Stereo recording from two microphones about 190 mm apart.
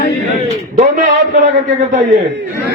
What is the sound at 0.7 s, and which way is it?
A man's voice, 45° right (ahead or behind).